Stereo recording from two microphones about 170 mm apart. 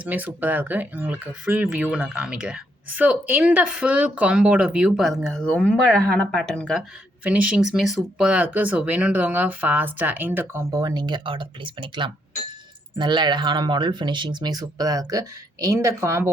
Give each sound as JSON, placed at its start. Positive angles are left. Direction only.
{"t": 0.0, "sound": "speech", "side_deg": -10}
{"t": 7.3, "sound": "speech", "side_deg": -5}